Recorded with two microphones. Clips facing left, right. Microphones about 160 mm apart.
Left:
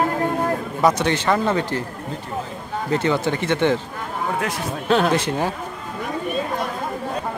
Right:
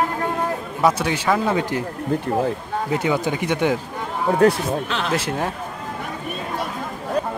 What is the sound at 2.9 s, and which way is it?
Speech, 10° right (ahead or behind).